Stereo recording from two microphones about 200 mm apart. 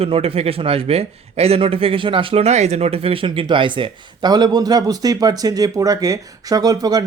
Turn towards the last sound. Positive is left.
turn(degrees=-20)  # may be behind; listen again after turning